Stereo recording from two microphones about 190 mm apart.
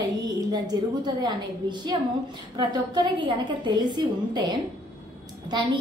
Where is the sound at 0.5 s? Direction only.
20° right (ahead or behind).